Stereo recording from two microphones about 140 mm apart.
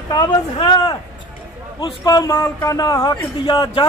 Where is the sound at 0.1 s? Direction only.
30° left (ahead or behind).